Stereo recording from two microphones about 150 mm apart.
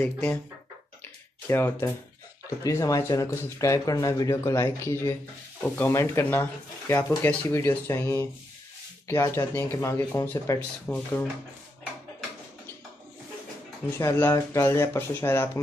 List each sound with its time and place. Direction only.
0.0 s speech: 10° left (ahead or behind)
1.5 s speech: 15° left (ahead or behind)
13.9 s speech: 15° left (ahead or behind)